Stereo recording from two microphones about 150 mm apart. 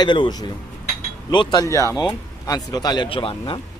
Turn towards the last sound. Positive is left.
turn(degrees=35)  # may be behind; listen again after turning